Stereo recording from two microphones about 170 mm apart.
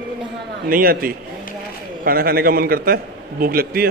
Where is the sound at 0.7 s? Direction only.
60° right (ahead or behind).